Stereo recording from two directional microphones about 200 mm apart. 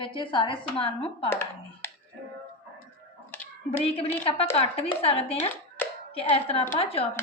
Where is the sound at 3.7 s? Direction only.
30° left (ahead or behind).